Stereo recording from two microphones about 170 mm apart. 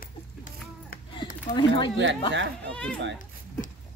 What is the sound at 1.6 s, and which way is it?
Speech, 30° left (ahead or behind).